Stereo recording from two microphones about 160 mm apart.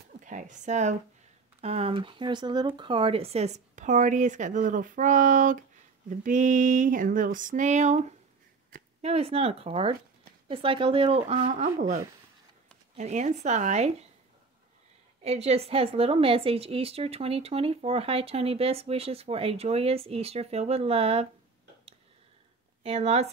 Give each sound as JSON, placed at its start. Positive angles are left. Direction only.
{"t": 0.2, "sound": "a woman's voice", "side_deg": -50}
{"t": 11.2, "sound": "speech", "side_deg": -50}
{"t": 12.9, "sound": "speech", "side_deg": -45}
{"t": 15.2, "sound": "a woman's voice", "side_deg": -40}
{"t": 22.8, "sound": "a woman's voice", "side_deg": -40}